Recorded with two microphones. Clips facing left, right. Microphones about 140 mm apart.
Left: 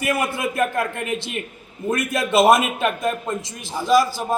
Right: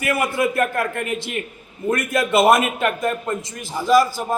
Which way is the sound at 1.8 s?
15° left (ahead or behind).